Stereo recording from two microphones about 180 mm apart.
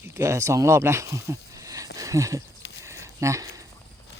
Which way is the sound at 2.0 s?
20° right (ahead or behind).